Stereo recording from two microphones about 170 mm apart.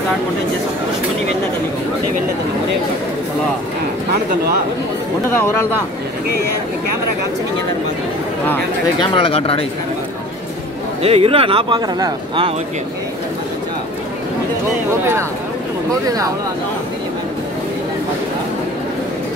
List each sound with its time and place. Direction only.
5.3 s speech: 15° left (ahead or behind)
9.0 s speech: 30° left (ahead or behind)
11.0 s speech: 35° right (ahead or behind)
15.9 s speech: 20° right (ahead or behind)